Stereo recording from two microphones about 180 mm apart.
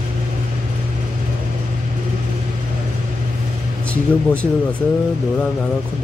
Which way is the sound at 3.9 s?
5° left (ahead or behind).